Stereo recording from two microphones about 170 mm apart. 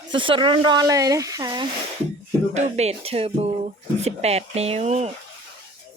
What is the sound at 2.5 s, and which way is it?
Music, 40° right (ahead or behind).